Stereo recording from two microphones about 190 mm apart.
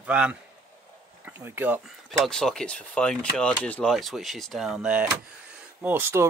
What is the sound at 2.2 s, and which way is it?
Speech, 5° left (ahead or behind).